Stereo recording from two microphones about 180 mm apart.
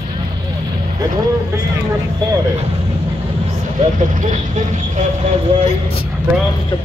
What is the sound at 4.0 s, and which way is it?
Speech, 45° right (ahead or behind).